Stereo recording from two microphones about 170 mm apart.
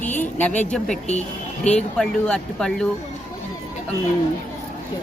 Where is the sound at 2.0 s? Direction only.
5° left (ahead or behind).